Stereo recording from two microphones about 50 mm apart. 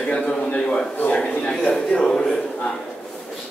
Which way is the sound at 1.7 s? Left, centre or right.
Left.